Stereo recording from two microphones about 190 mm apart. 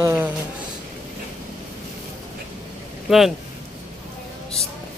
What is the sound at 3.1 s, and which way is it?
Speech, centre (ahead or behind).